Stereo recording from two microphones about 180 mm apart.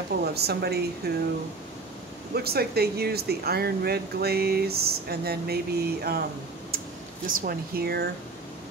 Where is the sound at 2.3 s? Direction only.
60° right (ahead or behind).